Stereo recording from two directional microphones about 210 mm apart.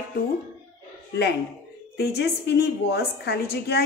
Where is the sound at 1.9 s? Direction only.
50° left (ahead or behind).